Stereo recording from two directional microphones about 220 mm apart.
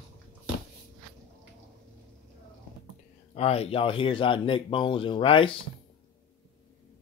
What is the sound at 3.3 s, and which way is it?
Speech, 25° left (ahead or behind).